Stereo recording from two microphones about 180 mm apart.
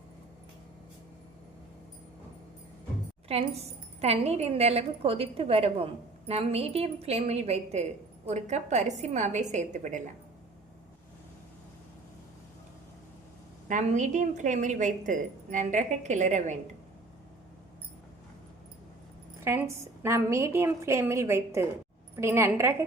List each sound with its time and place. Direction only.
3.3 s a woman's voice: 35° right (ahead or behind)
13.7 s a woman's voice: 45° right (ahead or behind)
19.5 s a woman's voice: 15° right (ahead or behind)